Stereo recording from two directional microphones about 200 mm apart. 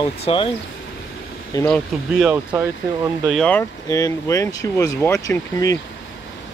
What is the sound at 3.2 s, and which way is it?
Speech, 5° left (ahead or behind).